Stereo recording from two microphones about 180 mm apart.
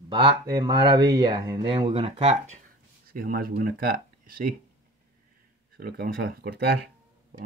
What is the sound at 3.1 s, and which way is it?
Speech, 55° right (ahead or behind).